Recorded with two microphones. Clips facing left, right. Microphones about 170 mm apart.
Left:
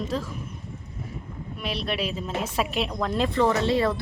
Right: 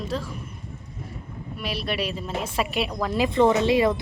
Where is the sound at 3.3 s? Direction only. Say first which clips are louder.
Right 4 dB; 20° right (ahead or behind).